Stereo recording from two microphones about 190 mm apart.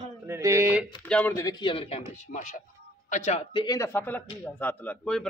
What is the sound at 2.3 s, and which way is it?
Speech, 40° left (ahead or behind).